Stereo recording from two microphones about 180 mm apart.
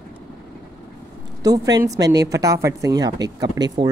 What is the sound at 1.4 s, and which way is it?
Speech, 20° right (ahead or behind).